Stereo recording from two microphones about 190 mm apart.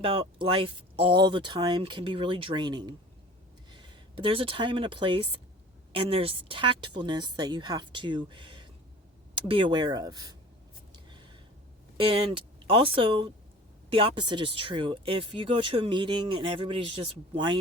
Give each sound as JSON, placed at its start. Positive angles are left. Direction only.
{"t": 0.0, "sound": "speech", "side_deg": -30}
{"t": 11.9, "sound": "speech", "side_deg": -30}